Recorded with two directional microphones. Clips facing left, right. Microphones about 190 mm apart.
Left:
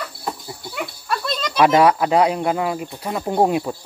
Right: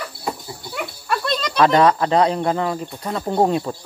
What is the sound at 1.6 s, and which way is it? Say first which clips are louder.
Speech: left 1 dB; 10° left (ahead or behind).